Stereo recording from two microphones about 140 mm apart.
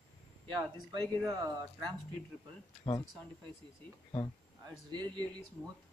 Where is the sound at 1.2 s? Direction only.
25° right (ahead or behind).